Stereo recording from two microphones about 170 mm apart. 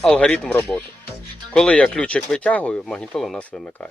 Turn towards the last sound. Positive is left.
turn(degrees=0)  # may be behind; listen again after turning